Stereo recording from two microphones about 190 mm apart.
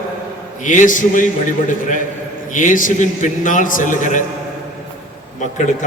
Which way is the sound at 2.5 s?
45° left (ahead or behind).